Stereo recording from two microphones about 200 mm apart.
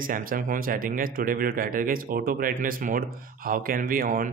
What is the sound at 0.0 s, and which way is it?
Speech, 45° right (ahead or behind).